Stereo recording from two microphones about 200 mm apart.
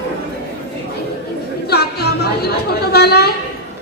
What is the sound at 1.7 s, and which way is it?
Chatter, 50° left (ahead or behind).